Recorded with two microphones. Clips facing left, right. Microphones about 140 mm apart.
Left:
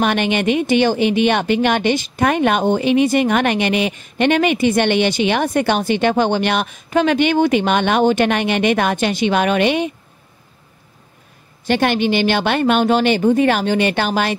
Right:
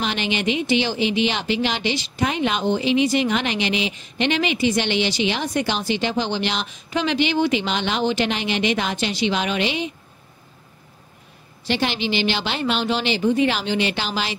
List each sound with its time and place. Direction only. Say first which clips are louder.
0.0 s speech: left 7 dB; 55° left (ahead or behind)
11.6 s speech: left 7 dB; 50° left (ahead or behind)